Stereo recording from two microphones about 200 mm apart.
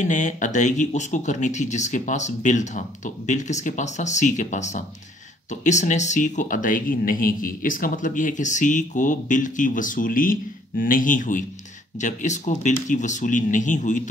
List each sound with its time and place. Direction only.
0.0 s speech: 40° left (ahead or behind)